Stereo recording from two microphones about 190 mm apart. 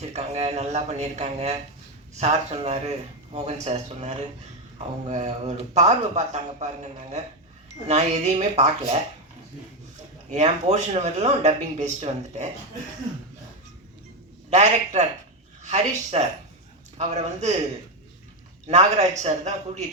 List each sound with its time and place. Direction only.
0.0 s speech: 35° right (ahead or behind)
10.2 s speech: 40° right (ahead or behind)
14.5 s speech: 35° right (ahead or behind)
18.7 s speech: 35° right (ahead or behind)